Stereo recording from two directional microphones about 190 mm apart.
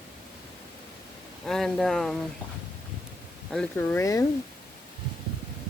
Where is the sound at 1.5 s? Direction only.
5° left (ahead or behind).